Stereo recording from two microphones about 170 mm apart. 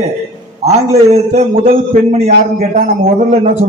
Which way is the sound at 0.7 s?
40° right (ahead or behind).